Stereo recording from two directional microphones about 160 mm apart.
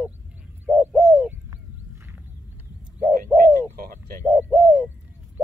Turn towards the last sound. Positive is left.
turn(degrees=-10)  # may be behind; listen again after turning